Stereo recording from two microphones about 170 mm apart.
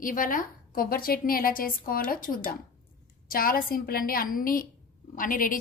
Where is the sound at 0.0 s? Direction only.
55° left (ahead or behind).